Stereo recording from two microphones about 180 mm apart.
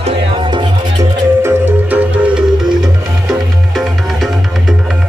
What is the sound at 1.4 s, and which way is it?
Music, 10° right (ahead or behind).